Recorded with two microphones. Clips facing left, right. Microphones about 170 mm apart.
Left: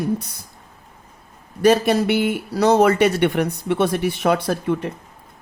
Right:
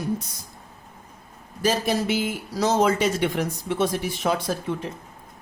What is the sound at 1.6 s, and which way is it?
Speech, 65° left (ahead or behind).